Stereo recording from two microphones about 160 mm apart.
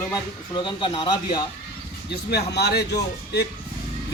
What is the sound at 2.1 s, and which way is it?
Speech, 90° left.